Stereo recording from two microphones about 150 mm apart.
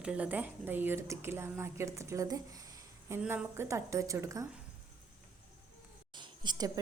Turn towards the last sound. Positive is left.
turn(degrees=-30)  # may be behind; listen again after turning